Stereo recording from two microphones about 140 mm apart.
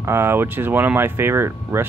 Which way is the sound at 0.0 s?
15° right (ahead or behind).